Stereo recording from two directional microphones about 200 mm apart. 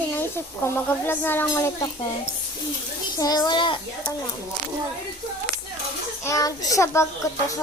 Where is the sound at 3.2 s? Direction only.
20° left (ahead or behind).